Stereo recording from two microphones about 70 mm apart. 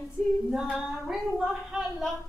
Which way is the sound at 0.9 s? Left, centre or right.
Centre.